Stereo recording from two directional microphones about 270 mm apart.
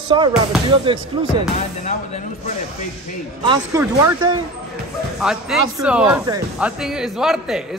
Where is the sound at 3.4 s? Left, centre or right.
Centre.